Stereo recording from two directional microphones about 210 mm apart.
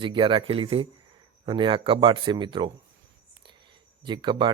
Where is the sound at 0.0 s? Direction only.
25° right (ahead or behind).